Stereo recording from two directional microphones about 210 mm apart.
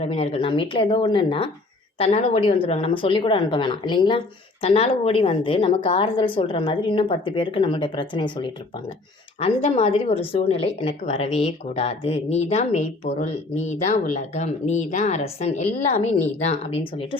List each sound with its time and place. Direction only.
0.0 s speech: 30° left (ahead or behind)